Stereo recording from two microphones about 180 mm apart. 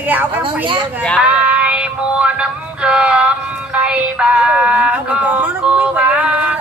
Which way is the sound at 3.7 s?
5° right (ahead or behind).